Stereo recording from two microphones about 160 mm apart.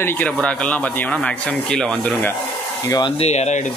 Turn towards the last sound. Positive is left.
turn(degrees=45)  # may be behind; listen again after turning